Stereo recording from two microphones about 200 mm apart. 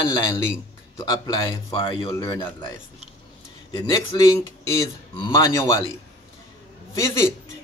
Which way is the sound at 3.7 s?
20° left (ahead or behind).